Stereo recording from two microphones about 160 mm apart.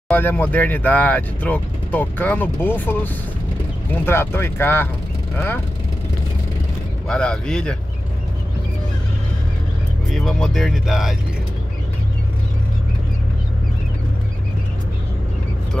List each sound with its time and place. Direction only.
0.1 s speech: 10° left (ahead or behind)
7.1 s speech: 5° left (ahead or behind)
10.1 s speech: centre (ahead or behind)